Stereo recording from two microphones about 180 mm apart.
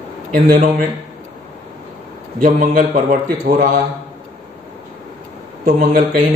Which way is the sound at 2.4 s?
45° right (ahead or behind).